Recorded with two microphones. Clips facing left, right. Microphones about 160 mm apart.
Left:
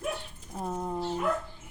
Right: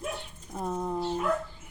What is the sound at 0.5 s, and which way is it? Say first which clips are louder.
Speech: right 2 dB; 10° left (ahead or behind).